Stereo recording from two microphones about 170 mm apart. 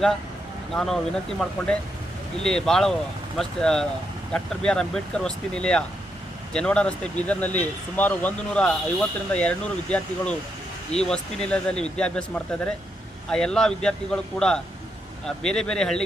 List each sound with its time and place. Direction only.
0.7 s speech: 5° left (ahead or behind)